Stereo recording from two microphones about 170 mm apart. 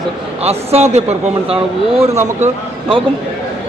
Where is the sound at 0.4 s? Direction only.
40° right (ahead or behind).